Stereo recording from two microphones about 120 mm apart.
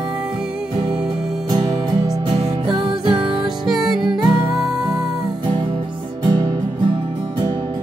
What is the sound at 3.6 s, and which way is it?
Music, 5° right (ahead or behind).